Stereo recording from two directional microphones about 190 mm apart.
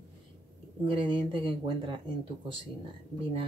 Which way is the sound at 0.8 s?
25° right (ahead or behind).